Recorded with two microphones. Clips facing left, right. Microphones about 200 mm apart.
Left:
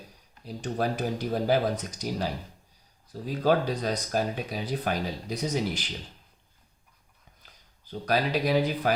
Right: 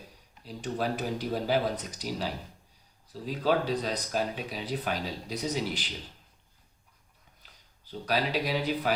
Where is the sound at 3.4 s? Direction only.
45° left (ahead or behind).